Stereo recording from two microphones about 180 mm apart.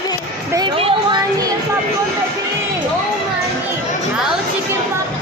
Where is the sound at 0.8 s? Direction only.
30° right (ahead or behind).